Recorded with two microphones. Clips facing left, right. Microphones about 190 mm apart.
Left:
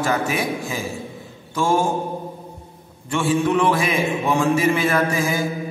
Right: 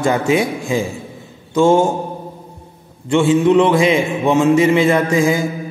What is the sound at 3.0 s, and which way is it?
A man's voice, 25° right (ahead or behind).